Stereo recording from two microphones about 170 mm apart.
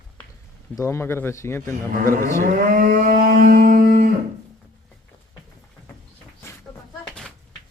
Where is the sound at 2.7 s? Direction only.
55° right (ahead or behind).